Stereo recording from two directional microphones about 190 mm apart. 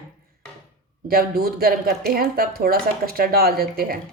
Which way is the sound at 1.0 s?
50° right (ahead or behind).